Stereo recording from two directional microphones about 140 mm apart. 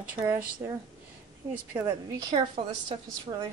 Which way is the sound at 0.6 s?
20° right (ahead or behind).